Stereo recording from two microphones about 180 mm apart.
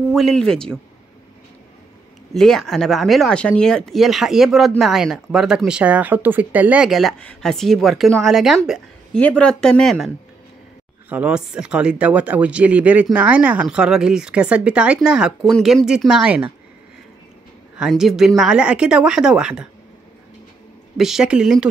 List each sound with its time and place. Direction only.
0.1 s speech: centre (ahead or behind)
2.3 s speech: centre (ahead or behind)
17.7 s speech: centre (ahead or behind)
21.0 s speech: 5° right (ahead or behind)